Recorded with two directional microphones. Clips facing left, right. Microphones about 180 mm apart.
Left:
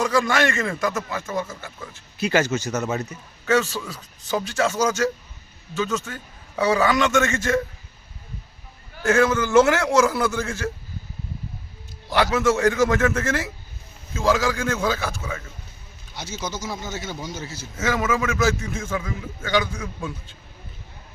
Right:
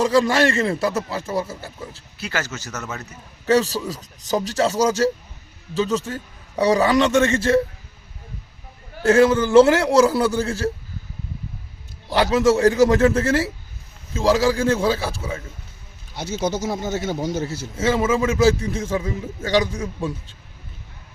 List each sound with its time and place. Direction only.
0.0 s a man's voice: 35° right (ahead or behind)
2.1 s speech: 20° left (ahead or behind)
3.4 s a man's voice: 35° right (ahead or behind)
9.0 s a man's voice: 30° right (ahead or behind)
12.1 s a man's voice: 35° right (ahead or behind)
16.4 s speech: 60° right (ahead or behind)
17.7 s a man's voice: 30° right (ahead or behind)